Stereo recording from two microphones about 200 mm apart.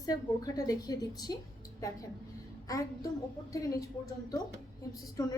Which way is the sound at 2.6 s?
15° left (ahead or behind).